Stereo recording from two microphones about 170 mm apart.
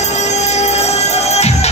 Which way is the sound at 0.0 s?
40° left (ahead or behind).